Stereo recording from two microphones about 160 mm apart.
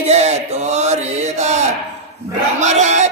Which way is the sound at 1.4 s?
45° right (ahead or behind).